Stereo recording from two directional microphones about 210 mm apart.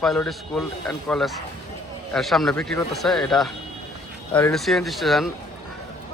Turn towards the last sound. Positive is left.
turn(degrees=0)  # may be behind; listen again after turning